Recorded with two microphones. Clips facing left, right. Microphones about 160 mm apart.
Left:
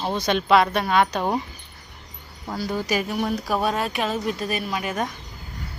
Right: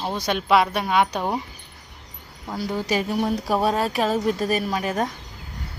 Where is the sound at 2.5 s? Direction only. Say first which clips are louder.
Right 1 dB; 25° right (ahead or behind).